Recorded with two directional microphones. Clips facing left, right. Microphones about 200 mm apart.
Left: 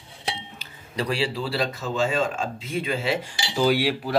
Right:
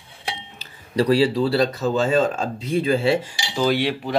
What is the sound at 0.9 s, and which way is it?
Speech, 35° right (ahead or behind).